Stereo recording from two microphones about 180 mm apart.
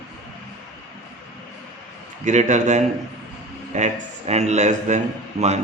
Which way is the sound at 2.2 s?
40° right (ahead or behind).